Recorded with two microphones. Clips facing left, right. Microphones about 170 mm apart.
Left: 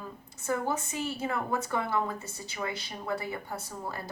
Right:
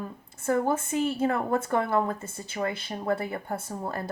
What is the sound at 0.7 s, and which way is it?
A woman's voice, 55° right (ahead or behind).